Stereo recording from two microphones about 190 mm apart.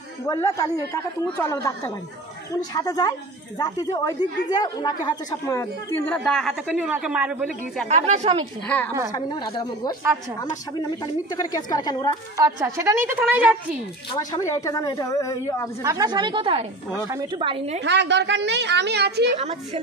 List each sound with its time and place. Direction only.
0.3 s speech: 15° left (ahead or behind)
2.5 s a woman's voice: 20° left (ahead or behind); by 7.9 s centre (ahead or behind)
7.9 s speech: 35° right (ahead or behind)
8.6 s speech: 10° left (ahead or behind)
9.1 s speech: 20° left (ahead or behind)
11.3 s speech: 20° left (ahead or behind)
12.5 s a woman's voice: 15° right (ahead or behind)
14.1 s speech: 20° left (ahead or behind)
15.8 s a woman's voice: 20° right (ahead or behind)
17.8 s a woman's voice: 65° right (ahead or behind)
19.3 s speech: 35° right (ahead or behind)